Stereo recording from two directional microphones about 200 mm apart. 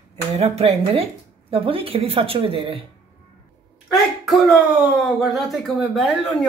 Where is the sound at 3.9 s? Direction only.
Centre (ahead or behind).